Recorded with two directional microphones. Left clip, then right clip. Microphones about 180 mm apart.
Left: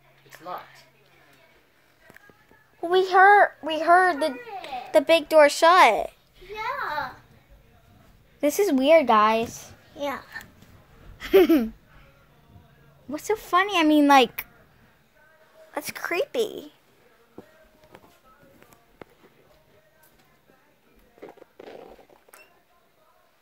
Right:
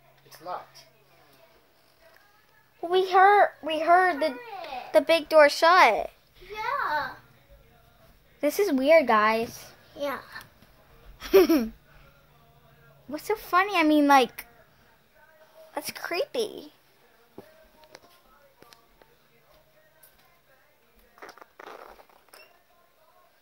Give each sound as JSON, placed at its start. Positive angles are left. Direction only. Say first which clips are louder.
{"t": 2.8, "sound": "a child's voice", "louder": "left 2 dB", "side_deg": 0}
{"t": 8.4, "sound": "a woman's voice", "louder": "left 3 dB", "side_deg": 5}
{"t": 9.9, "sound": "a child's voice", "louder": "left 1 dB", "side_deg": -15}
{"t": 11.1, "sound": "a sound", "louder": "left 2 dB", "side_deg": -10}
{"t": 13.1, "sound": "a woman's voice", "louder": "left 2 dB", "side_deg": 0}
{"t": 15.7, "sound": "a woman's voice", "louder": "left 3 dB", "side_deg": 5}